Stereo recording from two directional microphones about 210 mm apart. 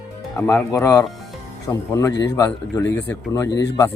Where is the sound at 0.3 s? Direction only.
5° left (ahead or behind).